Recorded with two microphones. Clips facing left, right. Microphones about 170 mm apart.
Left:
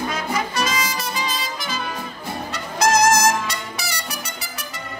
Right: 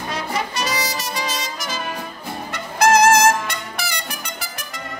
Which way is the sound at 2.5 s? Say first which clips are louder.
Right 3 dB; 55° right (ahead or behind).